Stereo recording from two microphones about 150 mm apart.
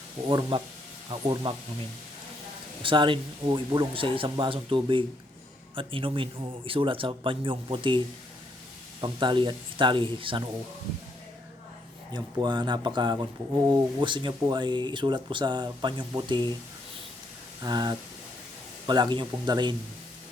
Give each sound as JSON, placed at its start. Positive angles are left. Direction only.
{"t": 0.3, "sound": "speech", "side_deg": -35}
{"t": 2.8, "sound": "speech", "side_deg": -35}
{"t": 12.1, "sound": "speech", "side_deg": -30}
{"t": 17.6, "sound": "speech", "side_deg": -25}